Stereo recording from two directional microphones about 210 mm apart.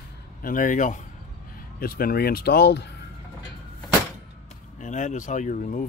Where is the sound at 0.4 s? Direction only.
40° left (ahead or behind).